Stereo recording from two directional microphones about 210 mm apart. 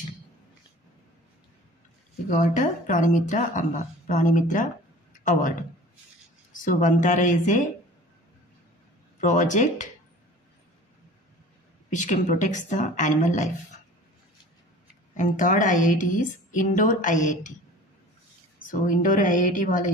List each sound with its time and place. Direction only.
2.2 s speech: 35° left (ahead or behind)
9.2 s speech: 35° left (ahead or behind)
11.9 s speech: 35° left (ahead or behind)
15.1 s speech: 40° left (ahead or behind)
18.7 s speech: 40° left (ahead or behind)